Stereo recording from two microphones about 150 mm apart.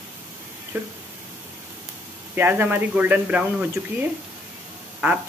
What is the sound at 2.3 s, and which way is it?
Speech, 10° right (ahead or behind).